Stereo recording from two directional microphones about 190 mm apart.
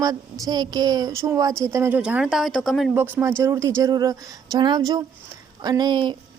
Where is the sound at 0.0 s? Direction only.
20° right (ahead or behind); by 2.9 s centre (ahead or behind).